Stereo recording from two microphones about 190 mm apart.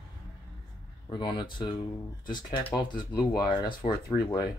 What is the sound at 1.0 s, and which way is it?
Speech, 25° left (ahead or behind).